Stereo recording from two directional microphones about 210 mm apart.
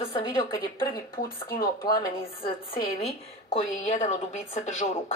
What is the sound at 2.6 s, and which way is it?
A woman's voice, 30° left (ahead or behind).